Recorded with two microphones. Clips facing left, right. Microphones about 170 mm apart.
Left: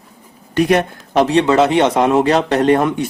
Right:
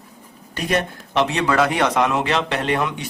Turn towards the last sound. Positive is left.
turn(degrees=45)  # may be behind; listen again after turning